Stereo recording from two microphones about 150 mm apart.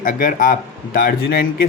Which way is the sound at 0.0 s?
65° left (ahead or behind).